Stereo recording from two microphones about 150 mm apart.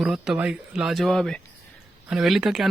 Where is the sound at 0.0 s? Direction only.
5° right (ahead or behind).